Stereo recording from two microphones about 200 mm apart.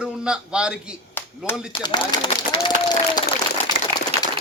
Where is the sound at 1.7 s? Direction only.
20° left (ahead or behind).